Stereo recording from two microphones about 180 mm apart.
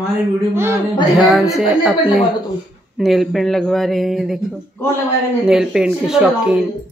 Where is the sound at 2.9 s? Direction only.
Centre (ahead or behind).